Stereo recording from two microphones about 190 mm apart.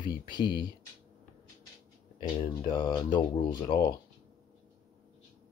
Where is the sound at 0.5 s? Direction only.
25° left (ahead or behind).